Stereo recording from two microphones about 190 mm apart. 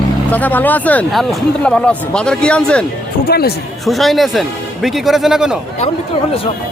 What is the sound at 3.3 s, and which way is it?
Speech, 55° left (ahead or behind).